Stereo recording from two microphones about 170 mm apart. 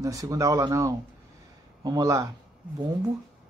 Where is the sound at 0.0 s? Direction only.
20° right (ahead or behind).